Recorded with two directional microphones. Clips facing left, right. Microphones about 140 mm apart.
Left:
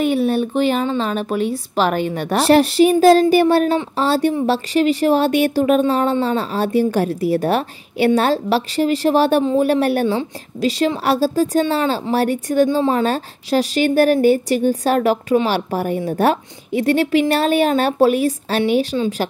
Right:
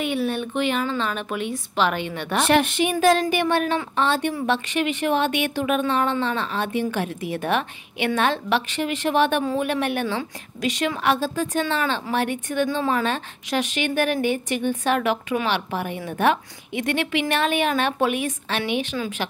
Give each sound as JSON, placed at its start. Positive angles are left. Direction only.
{"t": 0.0, "sound": "a woman's voice", "side_deg": 40}